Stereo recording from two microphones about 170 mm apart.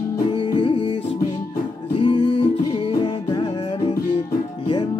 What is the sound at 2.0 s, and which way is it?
Music, 30° left (ahead or behind).